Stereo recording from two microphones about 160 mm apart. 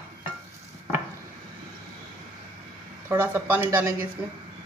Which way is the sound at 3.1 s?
15° right (ahead or behind).